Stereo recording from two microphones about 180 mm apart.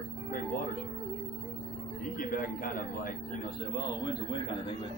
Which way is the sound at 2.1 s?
50° left (ahead or behind).